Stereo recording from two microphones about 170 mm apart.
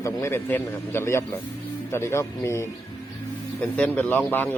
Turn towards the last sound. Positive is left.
turn(degrees=10)  # may be behind; listen again after turning